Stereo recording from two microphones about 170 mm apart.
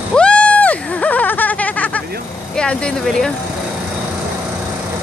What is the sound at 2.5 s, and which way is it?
Speech, 5° left (ahead or behind).